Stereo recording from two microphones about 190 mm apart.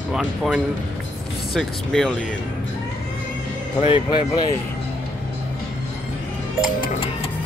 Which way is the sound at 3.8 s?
25° left (ahead or behind).